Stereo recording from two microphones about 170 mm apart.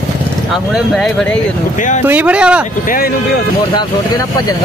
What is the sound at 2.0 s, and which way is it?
Speech, 10° right (ahead or behind).